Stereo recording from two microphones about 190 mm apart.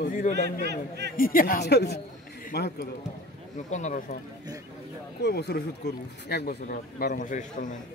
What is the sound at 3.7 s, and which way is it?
Speech, 40° left (ahead or behind).